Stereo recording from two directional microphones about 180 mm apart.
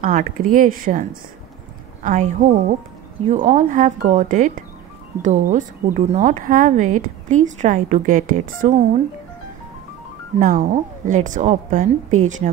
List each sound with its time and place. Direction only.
0.0 s speech: 50° right (ahead or behind)
2.0 s speech: 45° right (ahead or behind)
10.4 s speech: 45° right (ahead or behind)